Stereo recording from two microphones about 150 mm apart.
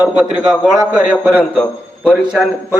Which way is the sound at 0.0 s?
10° right (ahead or behind).